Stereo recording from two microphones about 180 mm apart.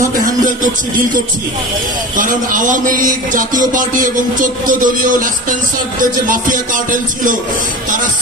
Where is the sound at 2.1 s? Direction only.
50° right (ahead or behind).